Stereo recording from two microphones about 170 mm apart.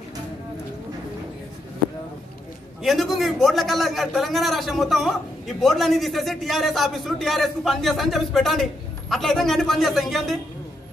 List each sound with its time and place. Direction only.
2.8 s a man's voice: centre (ahead or behind)